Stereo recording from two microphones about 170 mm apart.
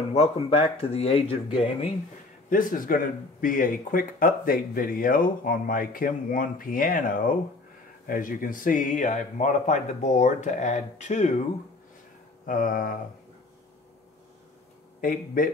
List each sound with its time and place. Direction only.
0.1 s speech: 35° left (ahead or behind)
2.5 s speech: 55° left (ahead or behind)
12.4 s speech: 55° left (ahead or behind)
15.0 s speech: 55° left (ahead or behind)